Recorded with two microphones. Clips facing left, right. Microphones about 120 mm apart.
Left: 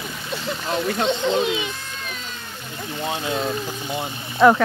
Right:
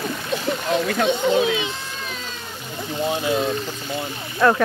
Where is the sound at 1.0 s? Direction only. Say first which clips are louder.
Right 2 dB; 10° right (ahead or behind).